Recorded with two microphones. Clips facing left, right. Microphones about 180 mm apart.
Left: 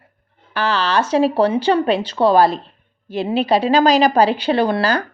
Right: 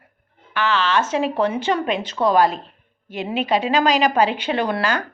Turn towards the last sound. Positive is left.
turn(degrees=35)  # may be behind; listen again after turning